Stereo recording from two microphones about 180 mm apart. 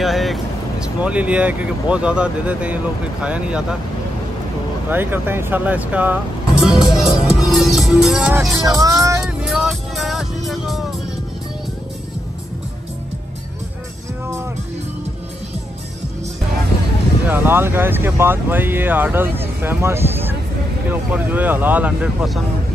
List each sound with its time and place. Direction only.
0.0 s speech: centre (ahead or behind)
4.8 s speech: 10° right (ahead or behind)
6.6 s music: centre (ahead or behind)
7.5 s speech: centre (ahead or behind)
8.6 s speech: 20° right (ahead or behind)
9.2 s music: 5° right (ahead or behind)
17.3 s speech: 10° right (ahead or behind)